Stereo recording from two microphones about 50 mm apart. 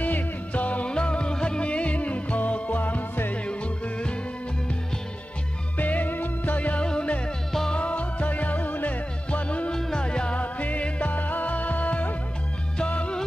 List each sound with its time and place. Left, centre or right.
0.0 s music: left
3.4 s music: left
5.8 s music: left
9.7 s music: centre